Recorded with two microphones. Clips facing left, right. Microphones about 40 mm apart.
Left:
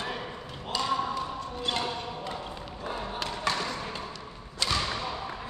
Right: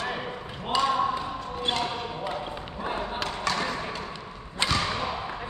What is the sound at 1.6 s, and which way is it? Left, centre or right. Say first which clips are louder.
Basketball bounce: right 3 dB; right.